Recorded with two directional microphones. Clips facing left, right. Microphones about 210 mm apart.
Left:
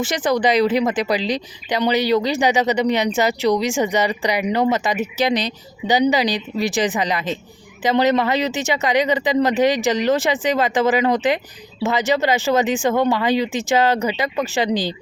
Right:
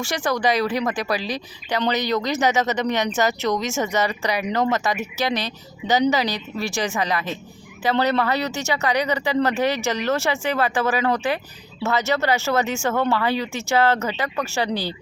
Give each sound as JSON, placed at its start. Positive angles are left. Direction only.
{"t": 0.0, "sound": "speech", "side_deg": 20}